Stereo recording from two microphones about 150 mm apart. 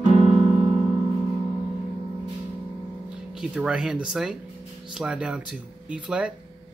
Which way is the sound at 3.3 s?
5° right (ahead or behind).